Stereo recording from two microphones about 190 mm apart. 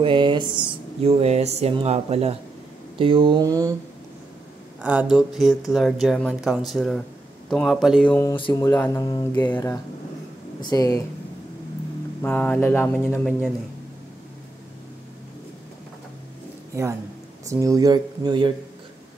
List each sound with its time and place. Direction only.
0.0 s speech: 25° right (ahead or behind)
4.8 s speech: 5° right (ahead or behind)
8.4 s speech: 20° left (ahead or behind)
12.2 s speech: 10° left (ahead or behind)
17.5 s speech: 15° right (ahead or behind)